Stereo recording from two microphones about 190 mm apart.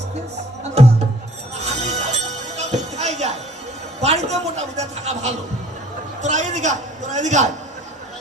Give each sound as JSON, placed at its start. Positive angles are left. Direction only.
{"t": 0.7, "sound": "music", "side_deg": -35}
{"t": 4.0, "sound": "a man's voice", "side_deg": -35}